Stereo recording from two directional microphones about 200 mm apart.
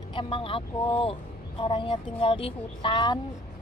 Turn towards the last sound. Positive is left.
turn(degrees=20)  # may be behind; listen again after turning